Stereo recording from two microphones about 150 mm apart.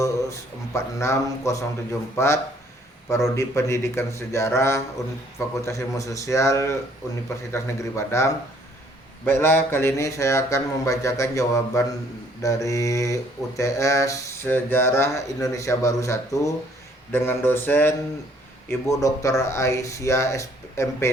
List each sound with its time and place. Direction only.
0.0 s speech: 20° left (ahead or behind)
17.1 s a sound: 15° left (ahead or behind)
18.7 s speech: 20° left (ahead or behind)